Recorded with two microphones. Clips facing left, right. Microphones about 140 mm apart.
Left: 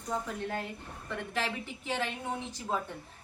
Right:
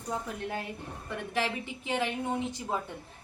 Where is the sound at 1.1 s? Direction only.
15° right (ahead or behind).